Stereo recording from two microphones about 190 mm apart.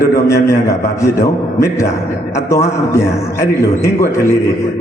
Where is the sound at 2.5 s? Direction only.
15° left (ahead or behind).